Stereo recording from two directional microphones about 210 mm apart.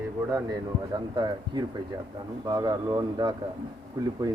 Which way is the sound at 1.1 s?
20° right (ahead or behind).